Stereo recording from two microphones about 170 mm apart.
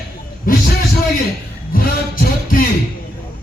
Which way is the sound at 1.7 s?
60° left (ahead or behind).